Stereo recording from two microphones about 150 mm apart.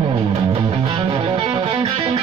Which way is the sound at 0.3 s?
40° right (ahead or behind).